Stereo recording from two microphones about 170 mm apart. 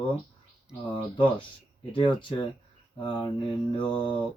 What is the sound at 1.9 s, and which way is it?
Speech, 30° left (ahead or behind).